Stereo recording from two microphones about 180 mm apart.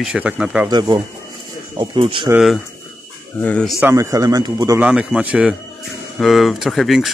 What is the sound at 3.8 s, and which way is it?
Speech, 15° right (ahead or behind).